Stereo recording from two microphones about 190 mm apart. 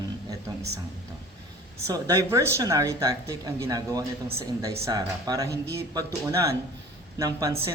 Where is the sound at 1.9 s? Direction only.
15° right (ahead or behind).